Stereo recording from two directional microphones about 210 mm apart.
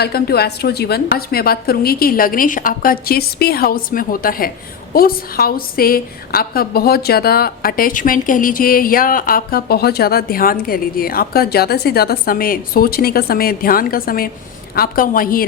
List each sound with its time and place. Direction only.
0.0 s a woman's voice: 50° left (ahead or behind)